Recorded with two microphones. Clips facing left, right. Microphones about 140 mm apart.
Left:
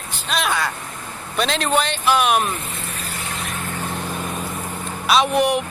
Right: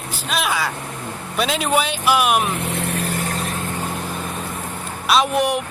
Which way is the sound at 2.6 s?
65° right (ahead or behind).